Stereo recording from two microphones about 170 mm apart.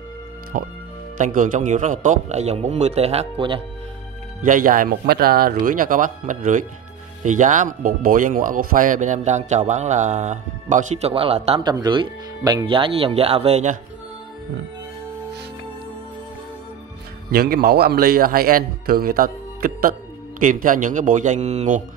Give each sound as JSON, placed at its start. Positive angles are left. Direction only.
{"t": 0.5, "sound": "a man's voice", "side_deg": -50}
{"t": 4.4, "sound": "speech", "side_deg": -55}
{"t": 11.6, "sound": "a man's voice", "side_deg": -25}
{"t": 17.3, "sound": "speech", "side_deg": -65}